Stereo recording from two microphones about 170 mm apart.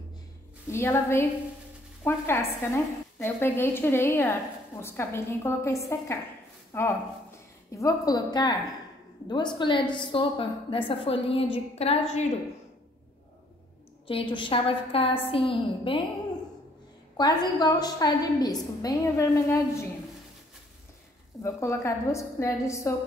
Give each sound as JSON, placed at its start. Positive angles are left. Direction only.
{"t": 0.7, "sound": "a woman's voice", "side_deg": 15}
{"t": 14.0, "sound": "a woman's voice", "side_deg": 30}
{"t": 17.2, "sound": "a woman's voice", "side_deg": 25}
{"t": 21.4, "sound": "a woman's voice", "side_deg": 20}